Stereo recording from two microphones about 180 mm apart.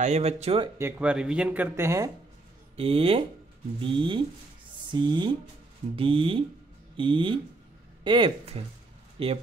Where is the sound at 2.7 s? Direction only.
30° right (ahead or behind).